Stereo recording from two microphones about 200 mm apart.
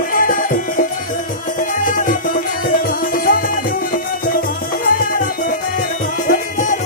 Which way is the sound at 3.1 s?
45° left (ahead or behind).